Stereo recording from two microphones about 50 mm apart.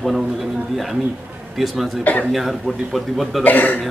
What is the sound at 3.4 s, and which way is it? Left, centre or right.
Speech, left.